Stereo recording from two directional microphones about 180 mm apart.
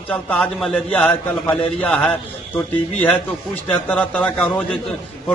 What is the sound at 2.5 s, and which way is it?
A man's voice, 10° left (ahead or behind).